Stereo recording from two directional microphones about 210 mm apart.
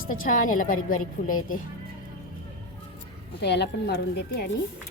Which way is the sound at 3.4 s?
50° left (ahead or behind).